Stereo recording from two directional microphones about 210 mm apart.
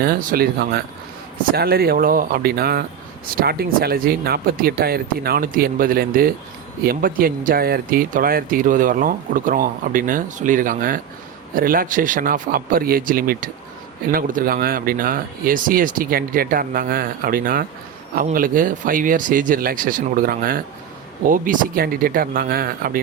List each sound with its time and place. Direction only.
0.0 s speech: 45° right (ahead or behind)